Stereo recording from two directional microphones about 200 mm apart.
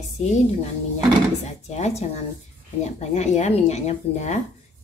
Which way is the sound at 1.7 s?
35° left (ahead or behind).